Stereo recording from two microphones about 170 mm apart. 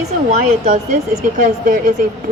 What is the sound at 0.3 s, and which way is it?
A woman's voice, 50° right (ahead or behind).